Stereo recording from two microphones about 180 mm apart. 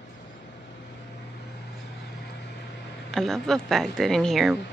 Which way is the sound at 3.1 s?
Centre (ahead or behind).